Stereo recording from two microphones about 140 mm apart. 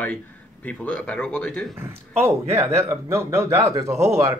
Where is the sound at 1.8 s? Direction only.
15° right (ahead or behind).